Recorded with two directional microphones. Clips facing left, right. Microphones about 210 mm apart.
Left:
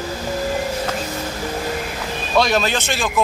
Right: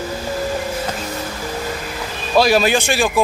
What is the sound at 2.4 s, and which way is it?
Speech, 10° right (ahead or behind).